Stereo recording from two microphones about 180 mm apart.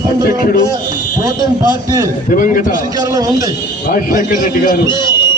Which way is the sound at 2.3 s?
50° left (ahead or behind).